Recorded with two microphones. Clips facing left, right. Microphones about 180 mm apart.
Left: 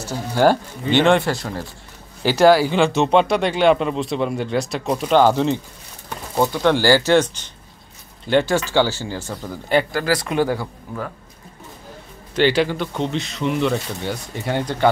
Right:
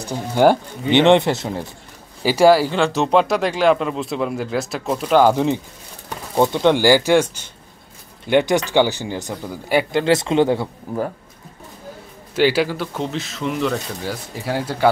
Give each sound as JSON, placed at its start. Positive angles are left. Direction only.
{"t": 0.0, "sound": "speech", "side_deg": -15}
{"t": 2.2, "sound": "speech", "side_deg": -5}
{"t": 9.9, "sound": "speech", "side_deg": -25}
{"t": 12.4, "sound": "speech", "side_deg": -5}